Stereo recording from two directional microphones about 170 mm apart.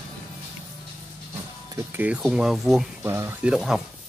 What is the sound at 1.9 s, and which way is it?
Speech, 10° right (ahead or behind).